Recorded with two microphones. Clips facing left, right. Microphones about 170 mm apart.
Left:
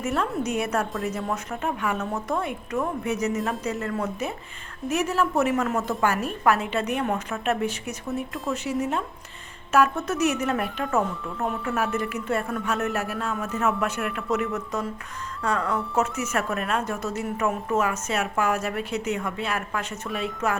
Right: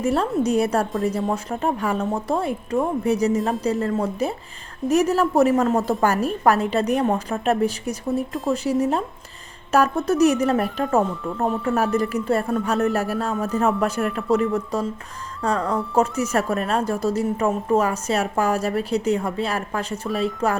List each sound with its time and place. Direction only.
0.0 s a woman's voice: 35° right (ahead or behind)